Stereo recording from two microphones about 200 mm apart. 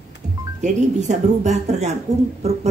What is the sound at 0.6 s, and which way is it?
A woman's voice, 35° right (ahead or behind).